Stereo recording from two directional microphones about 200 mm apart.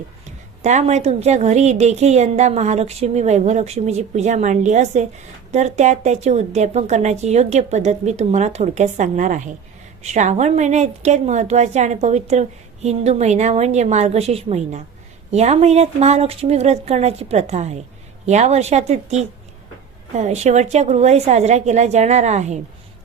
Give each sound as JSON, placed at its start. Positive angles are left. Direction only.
{"t": 0.3, "sound": "a woman's voice", "side_deg": -35}